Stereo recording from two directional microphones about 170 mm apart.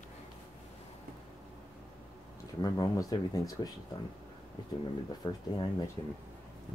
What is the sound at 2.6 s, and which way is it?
Speech, 20° left (ahead or behind).